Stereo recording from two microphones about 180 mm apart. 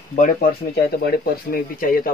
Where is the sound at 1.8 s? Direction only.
50° left (ahead or behind).